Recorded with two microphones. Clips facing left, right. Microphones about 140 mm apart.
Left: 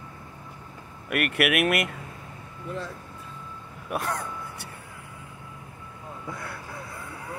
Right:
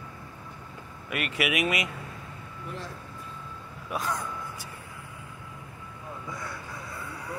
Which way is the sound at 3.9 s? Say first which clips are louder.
Left 2 dB; 60° left (ahead or behind).